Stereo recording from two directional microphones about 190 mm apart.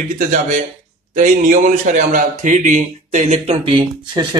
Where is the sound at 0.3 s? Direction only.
40° right (ahead or behind).